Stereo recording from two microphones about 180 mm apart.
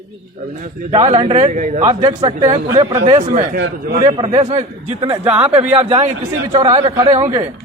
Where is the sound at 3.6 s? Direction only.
55° right (ahead or behind).